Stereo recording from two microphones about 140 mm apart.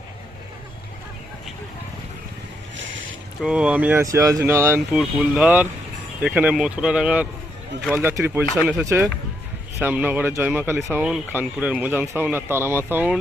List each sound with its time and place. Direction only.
3.4 s speech: 5° right (ahead or behind)
4.0 s speech: 25° right (ahead or behind)
4.9 s speech: 5° right (ahead or behind); by 9.0 s 20° right (ahead or behind)
9.7 s speech: 10° right (ahead or behind)